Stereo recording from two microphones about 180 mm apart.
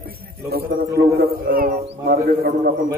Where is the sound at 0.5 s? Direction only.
60° right (ahead or behind).